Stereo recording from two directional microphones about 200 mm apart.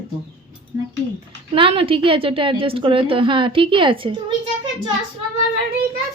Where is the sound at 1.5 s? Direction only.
25° right (ahead or behind).